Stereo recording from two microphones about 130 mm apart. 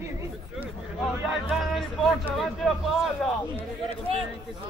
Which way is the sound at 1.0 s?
Centre (ahead or behind).